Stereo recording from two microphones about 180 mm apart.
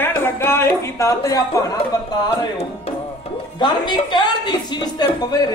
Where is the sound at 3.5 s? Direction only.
25° left (ahead or behind).